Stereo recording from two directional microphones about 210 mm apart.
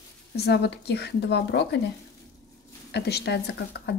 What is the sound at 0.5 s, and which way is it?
Speech, 50° left (ahead or behind).